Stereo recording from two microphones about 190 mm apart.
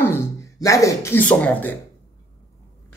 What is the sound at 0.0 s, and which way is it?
Speech, 15° left (ahead or behind).